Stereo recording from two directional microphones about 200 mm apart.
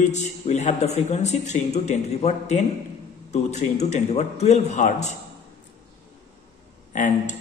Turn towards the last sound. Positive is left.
turn(degrees=40)  # may be behind; listen again after turning